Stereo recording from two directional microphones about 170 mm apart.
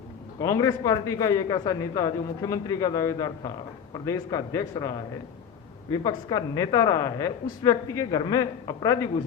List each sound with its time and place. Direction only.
0.4 s a man's voice: 20° left (ahead or behind)
5.9 s a man's voice: 25° left (ahead or behind)